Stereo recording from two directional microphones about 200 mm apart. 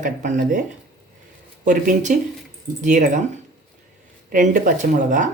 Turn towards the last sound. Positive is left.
turn(degrees=-40)  # may be behind; listen again after turning